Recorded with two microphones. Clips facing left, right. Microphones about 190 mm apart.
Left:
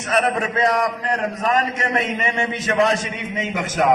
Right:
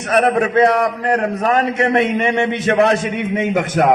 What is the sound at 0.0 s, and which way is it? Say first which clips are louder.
A man's voice: right 5 dB; 65° right (ahead or behind).